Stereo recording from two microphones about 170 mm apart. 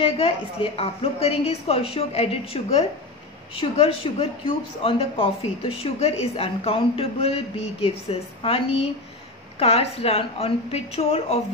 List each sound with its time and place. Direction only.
0.0 s a woman's voice: 35° left (ahead or behind)